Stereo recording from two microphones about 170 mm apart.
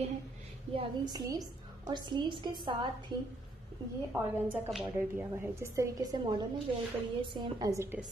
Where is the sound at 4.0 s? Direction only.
15° right (ahead or behind).